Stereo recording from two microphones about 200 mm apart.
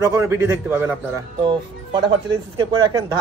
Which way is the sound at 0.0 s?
15° right (ahead or behind).